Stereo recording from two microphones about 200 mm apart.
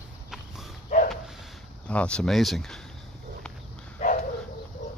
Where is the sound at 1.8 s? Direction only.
5° left (ahead or behind).